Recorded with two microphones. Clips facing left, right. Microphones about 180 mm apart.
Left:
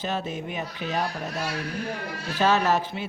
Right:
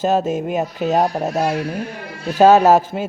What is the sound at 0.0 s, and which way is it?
A man's voice, 45° right (ahead or behind).